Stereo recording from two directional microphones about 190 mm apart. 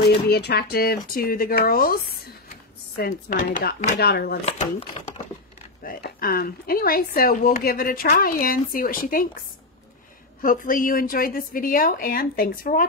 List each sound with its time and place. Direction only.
0.3 s speech: 55° left (ahead or behind)
4.5 s speech: 35° left (ahead or behind)
5.9 s speech: 50° left (ahead or behind)
10.4 s speech: 45° left (ahead or behind)